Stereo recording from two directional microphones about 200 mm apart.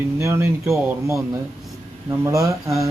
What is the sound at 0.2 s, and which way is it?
Speech, 15° right (ahead or behind).